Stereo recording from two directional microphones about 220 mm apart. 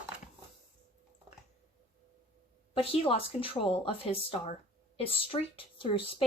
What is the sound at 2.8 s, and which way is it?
A woman's voice, 25° left (ahead or behind).